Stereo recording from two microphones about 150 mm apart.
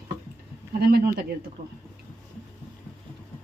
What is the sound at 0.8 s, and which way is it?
Speech, 90° right.